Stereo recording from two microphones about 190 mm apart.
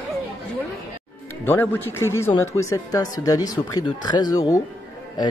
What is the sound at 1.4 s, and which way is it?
Speech, 10° left (ahead or behind).